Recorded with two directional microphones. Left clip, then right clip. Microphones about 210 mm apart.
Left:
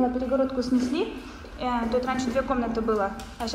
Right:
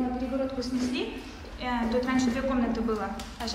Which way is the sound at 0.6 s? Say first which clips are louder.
Left 5 dB; centre (ahead or behind).